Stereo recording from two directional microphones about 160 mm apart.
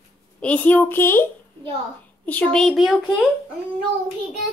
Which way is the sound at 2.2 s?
5° left (ahead or behind).